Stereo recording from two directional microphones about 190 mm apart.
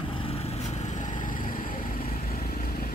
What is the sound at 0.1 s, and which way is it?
Vehicle, 30° left (ahead or behind).